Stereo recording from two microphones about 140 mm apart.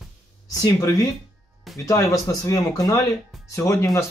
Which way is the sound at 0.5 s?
25° left (ahead or behind).